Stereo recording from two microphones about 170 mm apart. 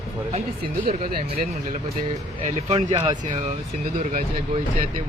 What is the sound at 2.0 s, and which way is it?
Speech, 40° right (ahead or behind).